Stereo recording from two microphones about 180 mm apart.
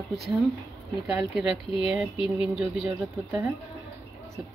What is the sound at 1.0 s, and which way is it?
Speech, 5° right (ahead or behind).